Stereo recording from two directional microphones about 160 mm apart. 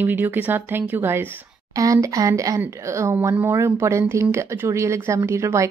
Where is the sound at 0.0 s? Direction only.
10° right (ahead or behind).